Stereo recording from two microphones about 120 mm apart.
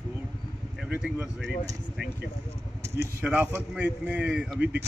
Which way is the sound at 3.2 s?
15° right (ahead or behind).